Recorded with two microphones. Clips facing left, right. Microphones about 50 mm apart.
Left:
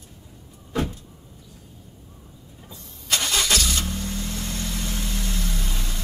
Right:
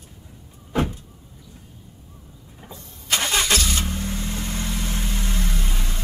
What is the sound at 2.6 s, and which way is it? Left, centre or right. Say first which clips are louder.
Vehicle: right 3 dB; right.